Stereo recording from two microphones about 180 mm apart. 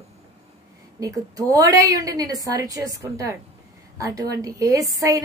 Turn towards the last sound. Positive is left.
turn(degrees=-20)  # may be behind; listen again after turning